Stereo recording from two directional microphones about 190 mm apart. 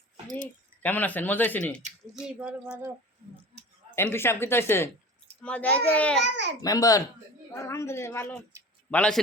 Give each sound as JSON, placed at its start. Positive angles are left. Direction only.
{"t": 0.4, "sound": "speech", "side_deg": 10}
{"t": 2.2, "sound": "speech", "side_deg": -5}
{"t": 3.9, "sound": "speech", "side_deg": 10}
{"t": 6.2, "sound": "a child's voice", "side_deg": -65}
{"t": 6.6, "sound": "a child's voice", "side_deg": 20}